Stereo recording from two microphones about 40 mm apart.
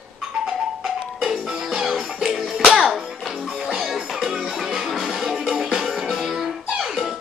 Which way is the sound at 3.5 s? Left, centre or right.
Right.